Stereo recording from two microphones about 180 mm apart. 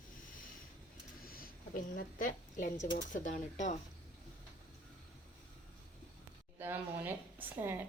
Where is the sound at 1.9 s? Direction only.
45° left (ahead or behind).